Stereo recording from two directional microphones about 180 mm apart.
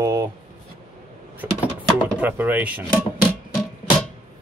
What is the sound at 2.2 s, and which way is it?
Speech, 10° right (ahead or behind).